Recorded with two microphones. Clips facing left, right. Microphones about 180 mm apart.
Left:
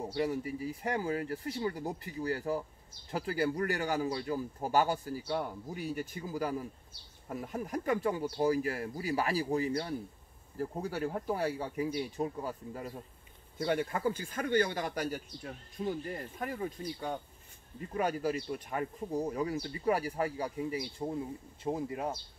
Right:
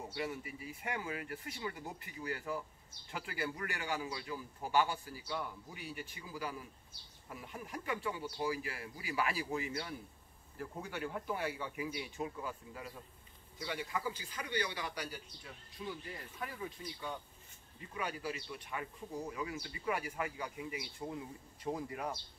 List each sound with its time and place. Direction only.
0.0 s speech: 40° left (ahead or behind)
13.6 s speech: 55° left (ahead or behind); by 22.1 s 25° left (ahead or behind)